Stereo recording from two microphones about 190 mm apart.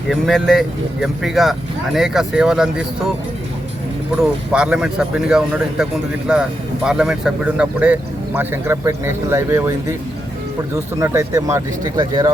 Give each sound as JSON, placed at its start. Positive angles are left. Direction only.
{"t": 0.1, "sound": "speech", "side_deg": 0}
{"t": 4.2, "sound": "speech", "side_deg": -5}
{"t": 11.0, "sound": "speech", "side_deg": -15}